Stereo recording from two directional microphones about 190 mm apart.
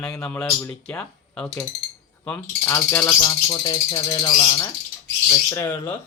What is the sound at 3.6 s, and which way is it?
Speech, 20° left (ahead or behind).